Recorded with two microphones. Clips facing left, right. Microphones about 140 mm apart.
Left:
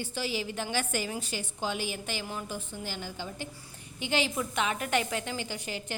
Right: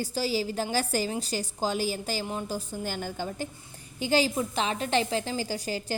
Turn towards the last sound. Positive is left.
turn(degrees=-35)  # may be behind; listen again after turning